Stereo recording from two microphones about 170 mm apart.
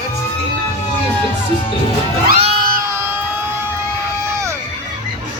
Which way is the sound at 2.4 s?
35° right (ahead or behind).